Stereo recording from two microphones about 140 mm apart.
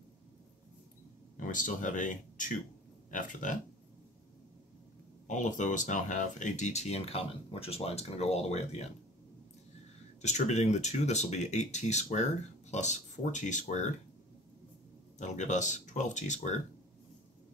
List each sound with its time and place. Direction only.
1.3 s speech: 70° left (ahead or behind)
5.2 s speech: 60° left (ahead or behind)
10.2 s speech: 55° left (ahead or behind)
15.1 s speech: 60° left (ahead or behind)